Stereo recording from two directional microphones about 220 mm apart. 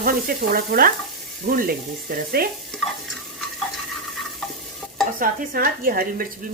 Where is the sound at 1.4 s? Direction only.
40° right (ahead or behind).